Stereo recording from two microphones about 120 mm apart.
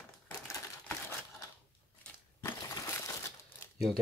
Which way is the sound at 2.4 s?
30° left (ahead or behind).